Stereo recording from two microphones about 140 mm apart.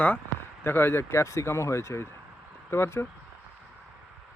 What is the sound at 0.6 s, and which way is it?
Speech, 15° left (ahead or behind).